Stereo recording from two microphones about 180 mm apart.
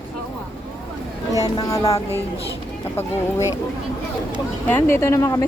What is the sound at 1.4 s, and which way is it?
Speech, 20° left (ahead or behind).